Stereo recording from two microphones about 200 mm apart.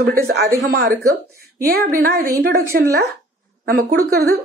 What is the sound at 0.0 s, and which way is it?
A woman's voice, 55° right (ahead or behind).